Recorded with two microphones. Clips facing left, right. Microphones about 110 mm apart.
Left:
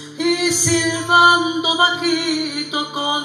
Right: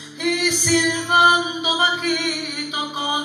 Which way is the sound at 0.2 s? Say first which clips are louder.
Left 4 dB; 30° left (ahead or behind).